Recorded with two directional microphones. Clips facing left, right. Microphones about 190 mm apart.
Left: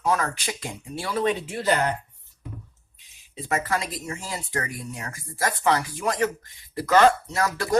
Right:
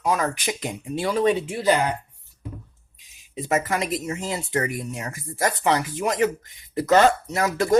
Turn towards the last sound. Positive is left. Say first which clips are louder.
# right 3 dB
turn(degrees=-20)  # may be behind; listen again after turning